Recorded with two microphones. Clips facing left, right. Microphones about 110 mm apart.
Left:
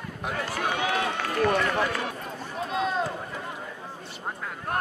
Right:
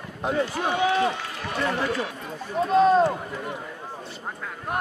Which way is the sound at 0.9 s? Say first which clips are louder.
Right 2 dB; 55° left (ahead or behind).